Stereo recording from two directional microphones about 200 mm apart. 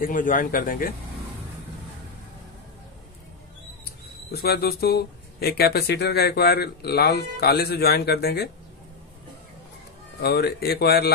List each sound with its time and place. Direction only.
0.0 s speech: 40° left (ahead or behind)
4.3 s speech: 50° left (ahead or behind)
10.2 s speech: 50° left (ahead or behind)